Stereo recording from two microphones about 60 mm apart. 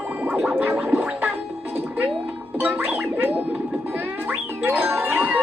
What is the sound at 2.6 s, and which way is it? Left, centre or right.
Gargling, right.